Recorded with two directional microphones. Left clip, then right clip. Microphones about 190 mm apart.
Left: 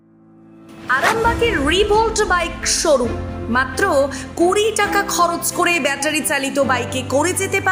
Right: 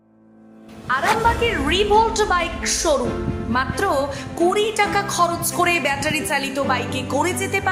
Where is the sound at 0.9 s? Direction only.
20° left (ahead or behind).